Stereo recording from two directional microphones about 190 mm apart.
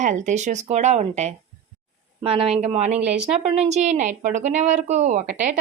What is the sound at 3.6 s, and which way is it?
A woman's voice, 35° right (ahead or behind).